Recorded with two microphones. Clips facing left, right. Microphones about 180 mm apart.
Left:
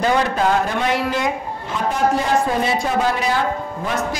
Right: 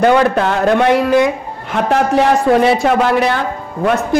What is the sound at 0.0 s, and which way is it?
A man's voice, 65° right (ahead or behind).